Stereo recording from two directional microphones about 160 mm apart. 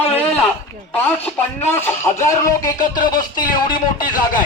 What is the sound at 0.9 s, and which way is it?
Speech, 15° left (ahead or behind).